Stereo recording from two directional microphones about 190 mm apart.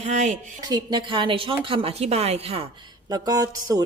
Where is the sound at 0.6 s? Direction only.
20° right (ahead or behind).